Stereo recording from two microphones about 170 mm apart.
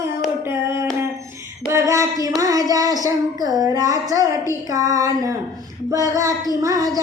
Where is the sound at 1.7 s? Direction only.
15° right (ahead or behind).